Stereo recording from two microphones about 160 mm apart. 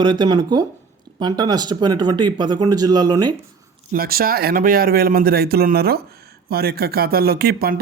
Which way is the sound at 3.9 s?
70° right (ahead or behind).